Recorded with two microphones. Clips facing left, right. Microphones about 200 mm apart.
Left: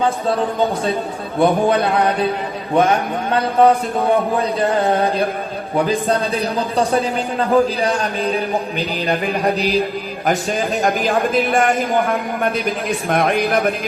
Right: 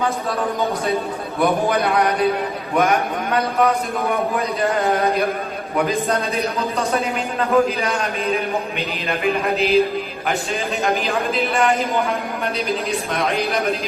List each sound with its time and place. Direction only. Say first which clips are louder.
1.4 s a man's voice: left 4 dB; 30° left (ahead or behind); by 13.7 s 55° left (ahead or behind)